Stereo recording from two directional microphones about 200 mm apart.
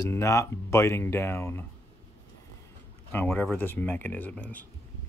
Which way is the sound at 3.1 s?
10° left (ahead or behind).